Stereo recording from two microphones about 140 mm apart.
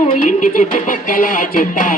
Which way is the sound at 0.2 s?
65° left (ahead or behind).